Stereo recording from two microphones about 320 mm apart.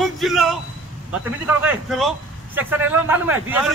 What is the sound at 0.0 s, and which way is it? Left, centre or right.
A man's voice, centre.